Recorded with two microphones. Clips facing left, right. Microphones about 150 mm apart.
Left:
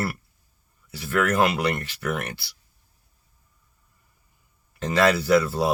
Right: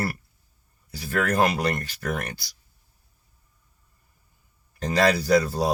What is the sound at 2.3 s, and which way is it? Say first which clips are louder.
Speech: left 1 dB; 65° left (ahead or behind).